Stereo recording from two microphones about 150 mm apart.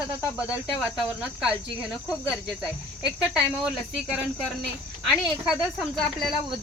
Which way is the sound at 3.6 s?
5° right (ahead or behind).